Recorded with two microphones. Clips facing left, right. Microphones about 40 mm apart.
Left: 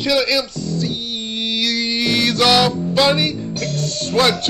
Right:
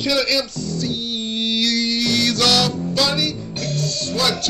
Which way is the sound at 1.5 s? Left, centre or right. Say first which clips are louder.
Even; centre.